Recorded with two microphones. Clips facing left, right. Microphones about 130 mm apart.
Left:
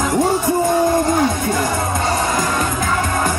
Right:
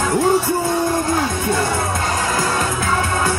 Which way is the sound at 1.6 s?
20° left (ahead or behind).